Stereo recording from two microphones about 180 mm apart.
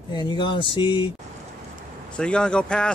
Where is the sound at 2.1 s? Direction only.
5° left (ahead or behind).